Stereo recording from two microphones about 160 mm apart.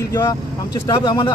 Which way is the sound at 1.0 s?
30° left (ahead or behind).